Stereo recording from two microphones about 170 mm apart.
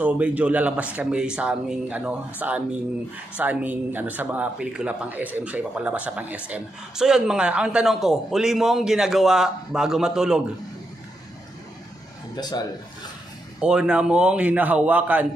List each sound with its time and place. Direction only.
0.0 s speech: 10° right (ahead or behind)
12.4 s speech: 25° left (ahead or behind)
13.6 s speech: 5° right (ahead or behind)